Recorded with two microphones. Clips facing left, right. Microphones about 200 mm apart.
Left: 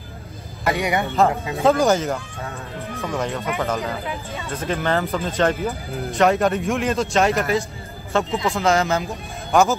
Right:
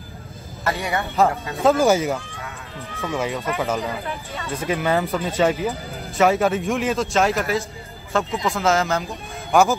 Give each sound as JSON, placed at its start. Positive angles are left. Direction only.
{"t": 0.7, "sound": "speech", "side_deg": 15}
{"t": 1.6, "sound": "a man's voice", "side_deg": 0}
{"t": 3.1, "sound": "a man's voice", "side_deg": -5}
{"t": 6.0, "sound": "a man's voice", "side_deg": 0}